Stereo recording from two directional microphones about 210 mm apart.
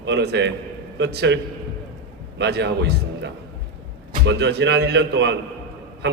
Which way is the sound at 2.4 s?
55° right (ahead or behind).